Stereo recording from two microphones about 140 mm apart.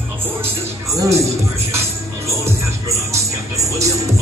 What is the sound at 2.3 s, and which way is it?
Music, 20° right (ahead or behind).